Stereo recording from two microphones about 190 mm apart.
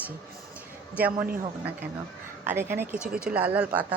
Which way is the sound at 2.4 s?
10° right (ahead or behind).